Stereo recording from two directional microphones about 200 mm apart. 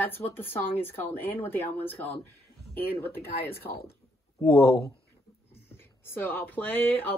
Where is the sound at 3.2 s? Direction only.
50° left (ahead or behind).